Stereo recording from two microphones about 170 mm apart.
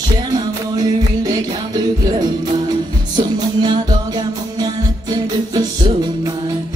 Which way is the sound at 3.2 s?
25° right (ahead or behind).